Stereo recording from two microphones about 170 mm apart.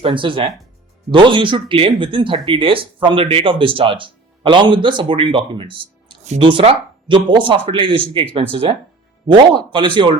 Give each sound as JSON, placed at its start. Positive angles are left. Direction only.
{"t": 0.0, "sound": "speech", "side_deg": -30}